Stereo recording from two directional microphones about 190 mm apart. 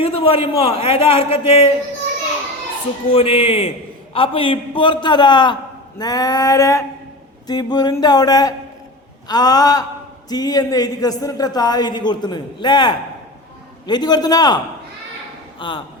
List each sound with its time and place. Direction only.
0.0 s speech: 30° left (ahead or behind)
3.1 s speech: 30° left (ahead or behind)